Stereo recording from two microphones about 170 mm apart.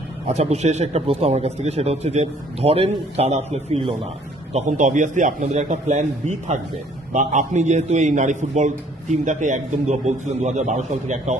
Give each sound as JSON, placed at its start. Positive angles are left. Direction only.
{"t": 0.3, "sound": "a man's voice", "side_deg": -40}